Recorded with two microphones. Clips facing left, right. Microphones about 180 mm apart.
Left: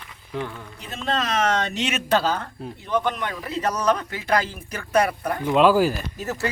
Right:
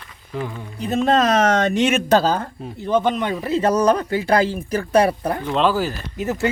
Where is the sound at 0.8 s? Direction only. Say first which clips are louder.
Right 10 dB; 45° right (ahead or behind).